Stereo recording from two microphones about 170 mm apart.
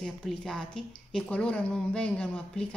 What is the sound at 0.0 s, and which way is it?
A woman's voice, 5° left (ahead or behind).